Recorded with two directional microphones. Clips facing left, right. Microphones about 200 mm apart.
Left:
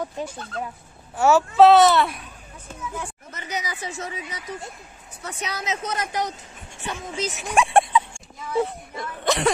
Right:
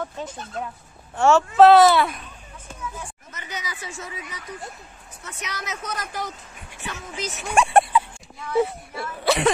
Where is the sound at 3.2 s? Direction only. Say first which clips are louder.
Left 5 dB; 35° left (ahead or behind).